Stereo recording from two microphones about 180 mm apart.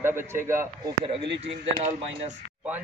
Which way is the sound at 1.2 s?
75° right (ahead or behind).